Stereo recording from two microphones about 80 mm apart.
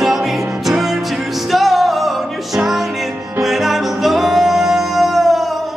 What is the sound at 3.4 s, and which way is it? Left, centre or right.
Music, centre.